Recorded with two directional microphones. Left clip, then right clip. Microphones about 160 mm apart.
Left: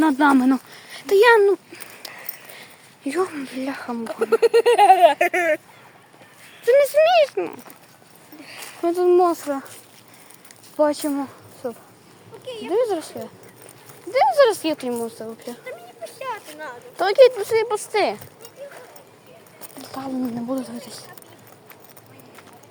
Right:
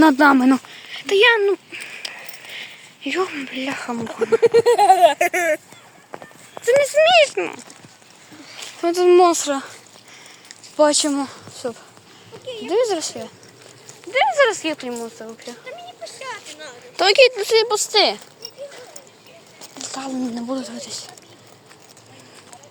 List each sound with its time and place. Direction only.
0.0 s speech: 60° right (ahead or behind)
0.3 s speech: 25° right (ahead or behind)
0.8 s speech: 25° left (ahead or behind); by 5.5 s centre (ahead or behind)
6.6 s speech: centre (ahead or behind)
8.8 s speech: centre (ahead or behind)
9.0 s speech: 15° right (ahead or behind)
10.8 s speech: 15° right (ahead or behind)
14.3 s speech: 25° left (ahead or behind)
16.0 s children playing: 90° left
16.5 s speech: 55° left (ahead or behind)
17.0 s speech: 25° right (ahead or behind)
17.6 s speech: 10° right (ahead or behind)
19.8 s a woman's voice: 10° left (ahead or behind)